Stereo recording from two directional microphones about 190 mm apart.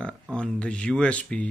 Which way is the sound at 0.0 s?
5° left (ahead or behind).